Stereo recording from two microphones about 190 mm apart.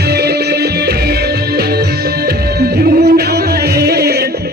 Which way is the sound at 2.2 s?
55° right (ahead or behind).